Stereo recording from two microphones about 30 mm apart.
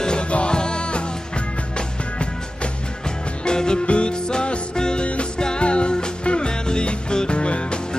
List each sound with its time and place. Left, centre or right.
0.0 s music: left
3.4 s music: left
3.8 s music: left